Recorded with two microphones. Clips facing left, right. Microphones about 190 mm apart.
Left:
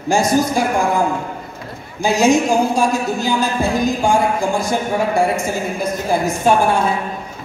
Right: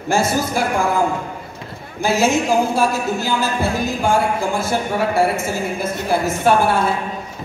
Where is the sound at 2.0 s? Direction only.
15° left (ahead or behind).